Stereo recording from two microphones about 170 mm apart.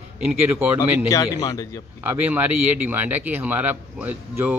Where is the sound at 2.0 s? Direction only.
10° right (ahead or behind).